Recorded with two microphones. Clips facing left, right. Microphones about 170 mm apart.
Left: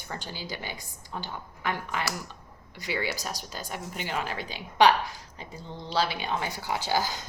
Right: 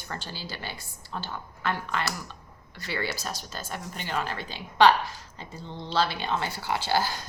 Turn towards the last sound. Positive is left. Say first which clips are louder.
# right 1 dB
turn(degrees=15)  # may be behind; listen again after turning